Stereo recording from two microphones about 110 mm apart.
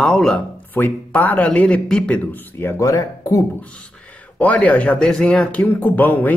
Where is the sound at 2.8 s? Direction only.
30° left (ahead or behind).